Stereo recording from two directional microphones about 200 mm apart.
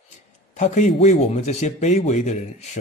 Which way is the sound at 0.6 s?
35° left (ahead or behind).